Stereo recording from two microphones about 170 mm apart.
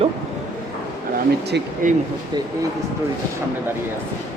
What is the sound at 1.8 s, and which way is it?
Speech, 50° right (ahead or behind).